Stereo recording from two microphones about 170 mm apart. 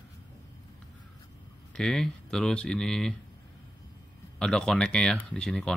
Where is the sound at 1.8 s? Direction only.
5° left (ahead or behind).